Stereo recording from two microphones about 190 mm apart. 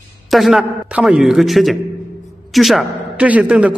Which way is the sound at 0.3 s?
Centre (ahead or behind).